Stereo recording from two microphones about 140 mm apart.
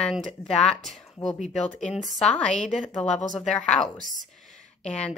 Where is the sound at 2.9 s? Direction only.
55° left (ahead or behind).